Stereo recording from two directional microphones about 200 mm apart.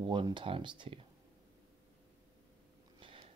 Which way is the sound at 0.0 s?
25° right (ahead or behind).